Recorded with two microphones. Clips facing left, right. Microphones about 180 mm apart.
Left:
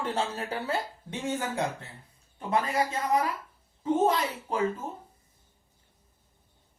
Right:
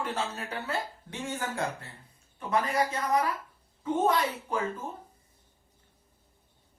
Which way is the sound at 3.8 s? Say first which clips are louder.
Left 1 dB; 30° left (ahead or behind).